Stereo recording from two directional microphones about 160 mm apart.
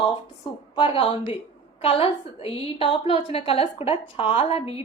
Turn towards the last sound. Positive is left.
turn(degrees=35)  # may be behind; listen again after turning